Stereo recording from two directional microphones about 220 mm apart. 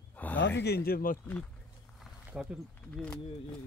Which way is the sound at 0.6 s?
45° left (ahead or behind).